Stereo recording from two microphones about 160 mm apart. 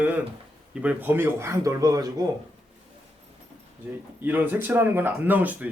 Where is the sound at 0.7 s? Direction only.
10° right (ahead or behind).